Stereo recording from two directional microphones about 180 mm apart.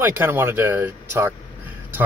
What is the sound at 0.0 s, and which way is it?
Speech, 10° right (ahead or behind).